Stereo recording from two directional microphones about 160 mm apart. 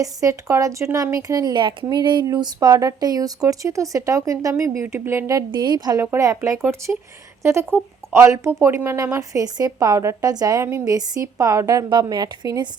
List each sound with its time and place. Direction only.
0.0 s speech: 20° right (ahead or behind)